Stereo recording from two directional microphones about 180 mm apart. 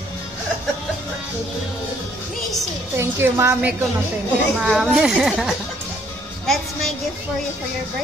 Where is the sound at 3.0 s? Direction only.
15° right (ahead or behind).